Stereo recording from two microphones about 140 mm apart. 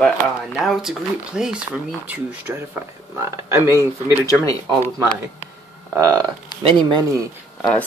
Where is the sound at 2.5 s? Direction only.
15° right (ahead or behind).